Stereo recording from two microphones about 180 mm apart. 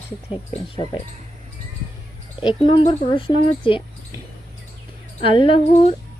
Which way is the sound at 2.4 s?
25° left (ahead or behind).